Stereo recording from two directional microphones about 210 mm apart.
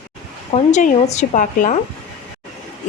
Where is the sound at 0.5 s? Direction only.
35° left (ahead or behind).